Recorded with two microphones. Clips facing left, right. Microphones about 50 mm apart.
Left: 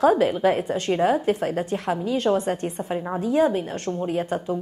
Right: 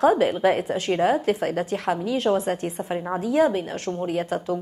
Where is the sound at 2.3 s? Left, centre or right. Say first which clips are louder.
Even; centre.